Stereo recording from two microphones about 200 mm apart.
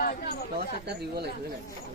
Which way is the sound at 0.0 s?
50° left (ahead or behind).